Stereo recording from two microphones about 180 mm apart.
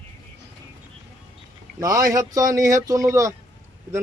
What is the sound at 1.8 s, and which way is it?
Speech, 20° right (ahead or behind).